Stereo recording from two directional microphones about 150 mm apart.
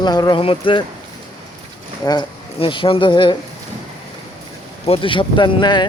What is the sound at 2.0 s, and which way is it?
A man's voice, 30° left (ahead or behind).